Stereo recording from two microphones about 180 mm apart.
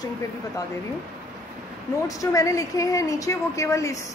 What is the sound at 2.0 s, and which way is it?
A woman's voice, 20° left (ahead or behind).